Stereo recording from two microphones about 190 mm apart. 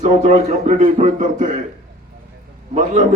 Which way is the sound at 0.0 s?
40° right (ahead or behind).